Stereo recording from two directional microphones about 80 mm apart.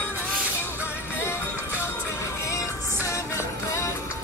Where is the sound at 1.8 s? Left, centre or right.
Left.